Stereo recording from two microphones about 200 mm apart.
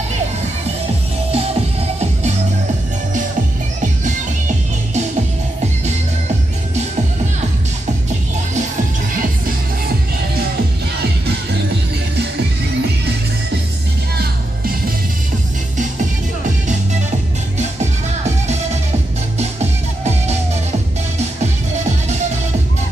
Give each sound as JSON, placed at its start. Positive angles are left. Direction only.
{"t": 1.3, "sound": "music", "side_deg": -30}
{"t": 21.2, "sound": "music", "side_deg": -35}